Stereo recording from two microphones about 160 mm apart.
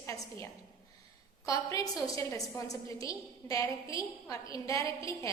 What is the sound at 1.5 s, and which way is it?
A woman's voice, 20° left (ahead or behind).